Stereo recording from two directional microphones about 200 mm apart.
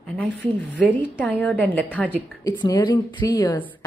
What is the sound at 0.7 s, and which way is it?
A woman's voice, 10° left (ahead or behind).